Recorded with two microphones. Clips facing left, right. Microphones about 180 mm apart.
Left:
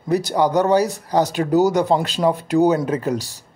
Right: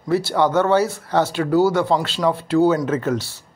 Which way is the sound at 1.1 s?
15° left (ahead or behind).